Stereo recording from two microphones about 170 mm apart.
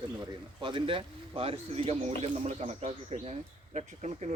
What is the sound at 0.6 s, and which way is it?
Speech, 30° right (ahead or behind).